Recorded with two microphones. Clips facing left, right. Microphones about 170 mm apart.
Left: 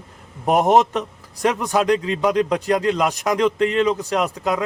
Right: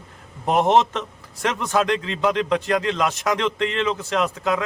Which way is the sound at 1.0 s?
40° left (ahead or behind).